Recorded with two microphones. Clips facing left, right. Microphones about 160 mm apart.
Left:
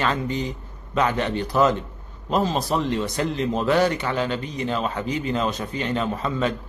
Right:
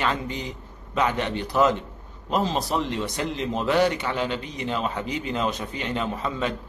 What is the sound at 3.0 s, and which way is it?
A man's voice, 20° right (ahead or behind).